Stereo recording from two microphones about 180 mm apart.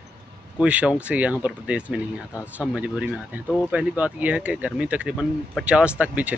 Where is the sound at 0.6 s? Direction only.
5° right (ahead or behind).